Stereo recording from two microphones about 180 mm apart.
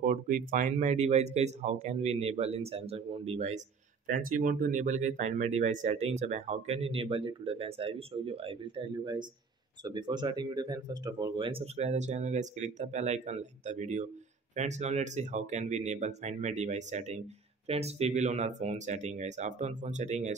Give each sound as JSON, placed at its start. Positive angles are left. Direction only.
{"t": 0.0, "sound": "speech", "side_deg": -50}
{"t": 4.1, "sound": "speech", "side_deg": -50}